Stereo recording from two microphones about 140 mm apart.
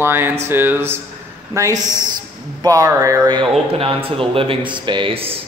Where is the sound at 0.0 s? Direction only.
15° right (ahead or behind).